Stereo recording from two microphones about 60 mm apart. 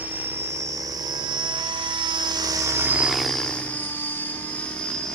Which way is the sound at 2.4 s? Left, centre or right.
Right.